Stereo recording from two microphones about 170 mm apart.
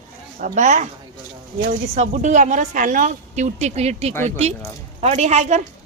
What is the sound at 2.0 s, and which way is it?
A woman's voice, 45° right (ahead or behind).